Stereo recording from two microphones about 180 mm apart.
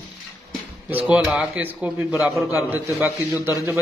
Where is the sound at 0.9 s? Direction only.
10° right (ahead or behind).